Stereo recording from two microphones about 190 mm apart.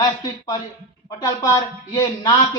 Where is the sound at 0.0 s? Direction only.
20° left (ahead or behind).